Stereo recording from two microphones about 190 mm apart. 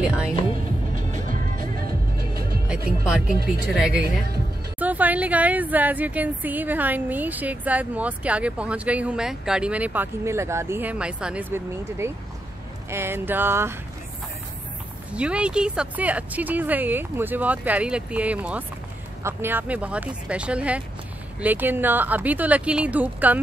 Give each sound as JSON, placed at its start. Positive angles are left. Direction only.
{"t": 0.0, "sound": "music", "side_deg": -5}
{"t": 0.9, "sound": "music", "side_deg": -45}
{"t": 3.6, "sound": "speech", "side_deg": -5}
{"t": 15.1, "sound": "speech", "side_deg": -5}